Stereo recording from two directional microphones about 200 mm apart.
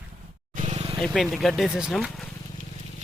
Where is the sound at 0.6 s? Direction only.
35° right (ahead or behind).